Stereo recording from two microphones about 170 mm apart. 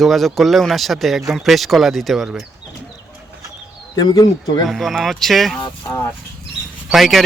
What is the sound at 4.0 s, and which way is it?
Speech, 25° left (ahead or behind).